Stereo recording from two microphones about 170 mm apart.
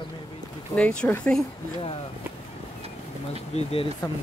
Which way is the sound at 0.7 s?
10° left (ahead or behind).